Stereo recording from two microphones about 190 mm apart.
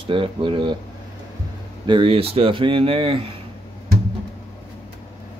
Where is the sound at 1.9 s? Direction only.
25° right (ahead or behind).